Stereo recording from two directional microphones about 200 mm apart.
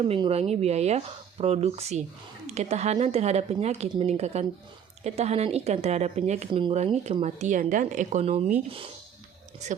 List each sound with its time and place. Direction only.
0.0 s speech: 25° right (ahead or behind)